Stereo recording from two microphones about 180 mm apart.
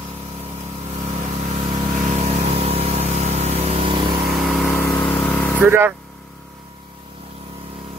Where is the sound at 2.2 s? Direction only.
35° right (ahead or behind).